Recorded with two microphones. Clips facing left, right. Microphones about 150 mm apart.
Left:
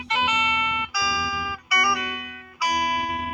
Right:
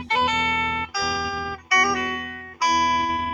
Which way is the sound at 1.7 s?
40° right (ahead or behind).